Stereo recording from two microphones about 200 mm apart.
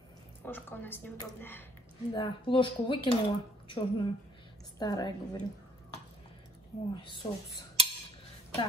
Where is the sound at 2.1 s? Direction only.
25° left (ahead or behind).